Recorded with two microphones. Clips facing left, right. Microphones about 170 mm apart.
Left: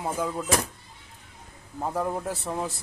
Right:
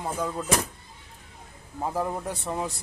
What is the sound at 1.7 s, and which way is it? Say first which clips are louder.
Speech: even; centre (ahead or behind).